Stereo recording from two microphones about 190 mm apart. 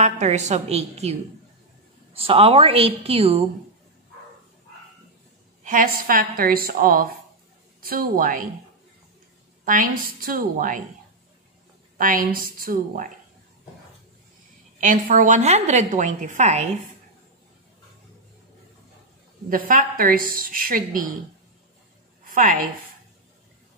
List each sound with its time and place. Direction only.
0.0 s a woman's voice: 35° right (ahead or behind)
2.1 s a woman's voice: 30° right (ahead or behind)
5.6 s a woman's voice: 45° right (ahead or behind)
9.7 s a woman's voice: 45° right (ahead or behind)
12.0 s a woman's voice: 45° right (ahead or behind)
14.8 s a woman's voice: 45° right (ahead or behind)
19.5 s a woman's voice: 45° right (ahead or behind)
22.2 s a woman's voice: 45° right (ahead or behind)